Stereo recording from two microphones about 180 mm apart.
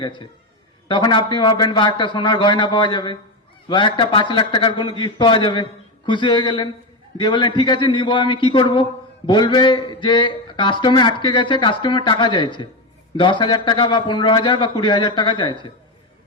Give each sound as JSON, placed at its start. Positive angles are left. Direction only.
{"t": 0.0, "sound": "a man's voice", "side_deg": 25}